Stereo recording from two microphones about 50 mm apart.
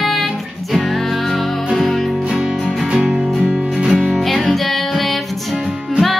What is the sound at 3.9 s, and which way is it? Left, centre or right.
Music, centre.